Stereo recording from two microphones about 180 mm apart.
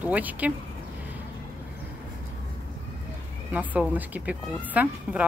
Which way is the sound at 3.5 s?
10° right (ahead or behind).